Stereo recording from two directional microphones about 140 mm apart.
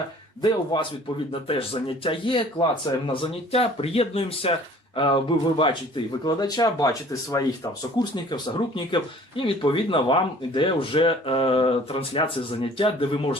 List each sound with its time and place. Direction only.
0.4 s speech: 35° left (ahead or behind)